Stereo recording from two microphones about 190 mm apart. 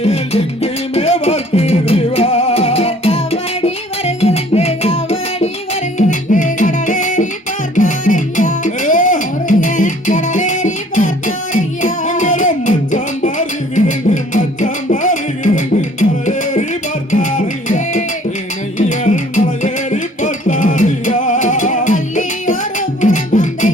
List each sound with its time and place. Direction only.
0.0 s music: 30° left (ahead or behind)